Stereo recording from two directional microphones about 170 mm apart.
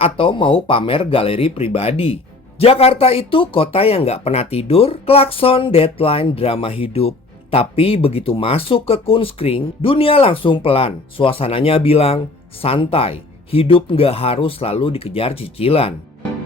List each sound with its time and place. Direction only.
0.0 s speech: 30° left (ahead or behind)